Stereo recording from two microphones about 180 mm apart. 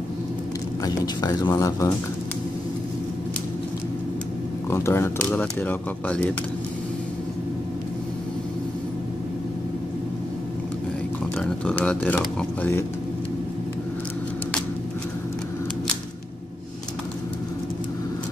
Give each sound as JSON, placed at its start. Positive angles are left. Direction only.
{"t": 0.8, "sound": "speech", "side_deg": 20}
{"t": 4.6, "sound": "speech", "side_deg": 15}
{"t": 11.3, "sound": "speech", "side_deg": 5}